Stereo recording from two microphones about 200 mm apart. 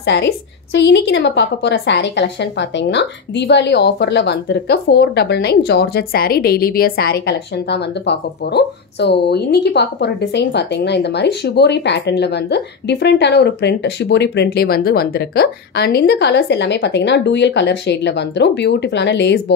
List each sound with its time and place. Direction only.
0.0 s a woman's voice: 60° left (ahead or behind)